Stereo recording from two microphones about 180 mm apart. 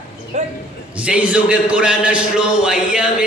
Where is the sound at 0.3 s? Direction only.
40° right (ahead or behind).